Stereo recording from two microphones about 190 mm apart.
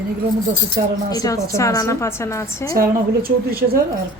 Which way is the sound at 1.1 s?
20° left (ahead or behind).